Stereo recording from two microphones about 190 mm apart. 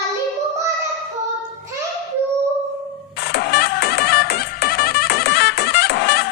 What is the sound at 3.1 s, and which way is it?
Music, 55° left (ahead or behind).